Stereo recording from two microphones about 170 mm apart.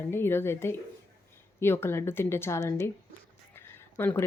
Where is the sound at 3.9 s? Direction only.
15° left (ahead or behind).